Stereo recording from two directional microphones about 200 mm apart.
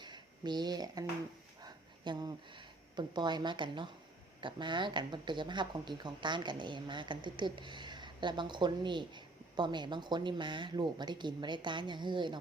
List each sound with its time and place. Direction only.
0.0 s speech: 20° right (ahead or behind)